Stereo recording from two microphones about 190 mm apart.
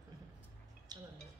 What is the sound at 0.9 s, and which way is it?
Music, 20° right (ahead or behind).